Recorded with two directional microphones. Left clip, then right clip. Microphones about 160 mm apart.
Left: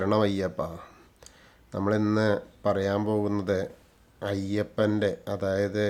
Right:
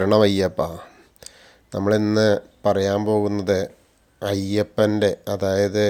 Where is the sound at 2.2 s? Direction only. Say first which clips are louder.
Right 7 dB; 25° right (ahead or behind).